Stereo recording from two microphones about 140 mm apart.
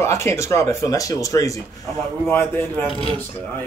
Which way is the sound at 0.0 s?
20° left (ahead or behind).